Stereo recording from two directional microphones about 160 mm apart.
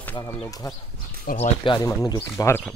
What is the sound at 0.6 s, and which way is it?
Speech, 20° left (ahead or behind).